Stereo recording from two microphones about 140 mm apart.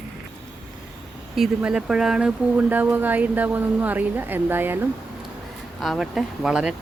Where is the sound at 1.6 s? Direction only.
5° right (ahead or behind).